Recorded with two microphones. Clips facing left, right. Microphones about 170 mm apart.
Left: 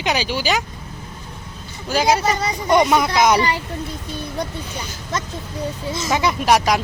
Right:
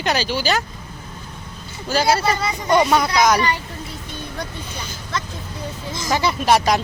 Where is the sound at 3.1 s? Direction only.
25° left (ahead or behind).